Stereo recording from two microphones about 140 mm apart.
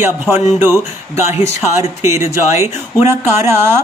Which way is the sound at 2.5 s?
20° right (ahead or behind).